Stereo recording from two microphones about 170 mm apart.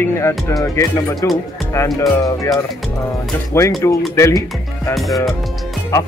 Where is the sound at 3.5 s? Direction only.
15° left (ahead or behind).